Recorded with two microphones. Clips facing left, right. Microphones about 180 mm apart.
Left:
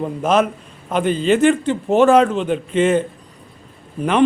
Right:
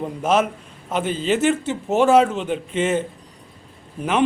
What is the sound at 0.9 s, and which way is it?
Speech, 55° left (ahead or behind).